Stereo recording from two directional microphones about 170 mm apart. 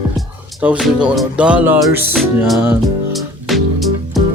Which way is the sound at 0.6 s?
5° right (ahead or behind).